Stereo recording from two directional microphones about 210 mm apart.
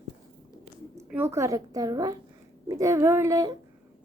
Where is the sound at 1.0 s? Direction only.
10° right (ahead or behind).